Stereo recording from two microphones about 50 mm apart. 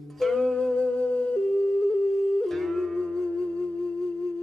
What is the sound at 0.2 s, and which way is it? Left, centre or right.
Music, centre.